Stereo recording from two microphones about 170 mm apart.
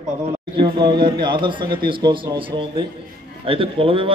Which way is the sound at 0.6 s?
25° right (ahead or behind).